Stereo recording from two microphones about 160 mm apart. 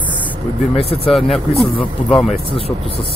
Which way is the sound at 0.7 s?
35° left (ahead or behind).